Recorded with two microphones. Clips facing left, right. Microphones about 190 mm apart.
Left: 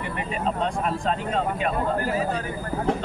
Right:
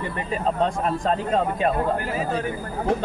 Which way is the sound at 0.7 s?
40° right (ahead or behind).